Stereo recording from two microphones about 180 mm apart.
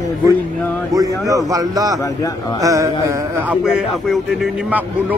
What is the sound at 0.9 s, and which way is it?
A man's voice, 20° right (ahead or behind).